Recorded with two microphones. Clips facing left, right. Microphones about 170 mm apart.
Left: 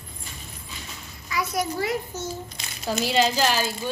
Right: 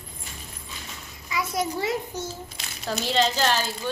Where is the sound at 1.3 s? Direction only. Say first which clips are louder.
Even; 25° right (ahead or behind).